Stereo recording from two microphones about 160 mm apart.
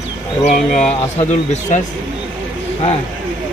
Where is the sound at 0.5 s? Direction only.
45° left (ahead or behind).